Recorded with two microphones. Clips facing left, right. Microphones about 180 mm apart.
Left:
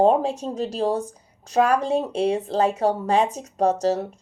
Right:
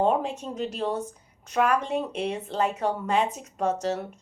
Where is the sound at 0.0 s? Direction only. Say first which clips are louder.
Left 6 dB; 35° left (ahead or behind).